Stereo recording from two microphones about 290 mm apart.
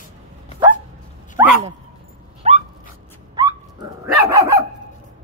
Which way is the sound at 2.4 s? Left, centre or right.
Right.